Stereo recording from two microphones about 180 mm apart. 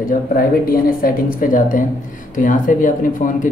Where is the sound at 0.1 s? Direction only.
50° left (ahead or behind).